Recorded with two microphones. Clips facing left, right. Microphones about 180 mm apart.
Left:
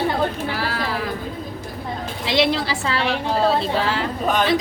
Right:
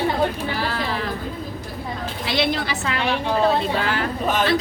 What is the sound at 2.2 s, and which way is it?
A woman's voice, 25° left (ahead or behind).